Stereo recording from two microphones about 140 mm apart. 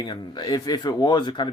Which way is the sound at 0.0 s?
30° left (ahead or behind).